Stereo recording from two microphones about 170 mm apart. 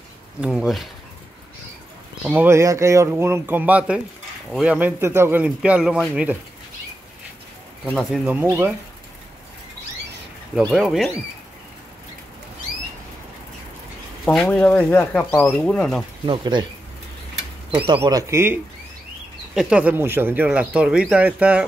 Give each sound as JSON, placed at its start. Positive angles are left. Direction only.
{"t": 0.4, "sound": "speech", "side_deg": -5}
{"t": 2.2, "sound": "speech", "side_deg": -10}
{"t": 7.9, "sound": "speech", "side_deg": 0}
{"t": 10.7, "sound": "speech", "side_deg": 0}
{"t": 14.2, "sound": "speech", "side_deg": 5}
{"t": 16.3, "sound": "speech", "side_deg": -30}
{"t": 17.8, "sound": "speech", "side_deg": -25}